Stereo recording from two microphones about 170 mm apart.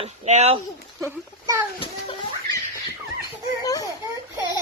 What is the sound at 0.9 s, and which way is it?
Speech, 20° right (ahead or behind).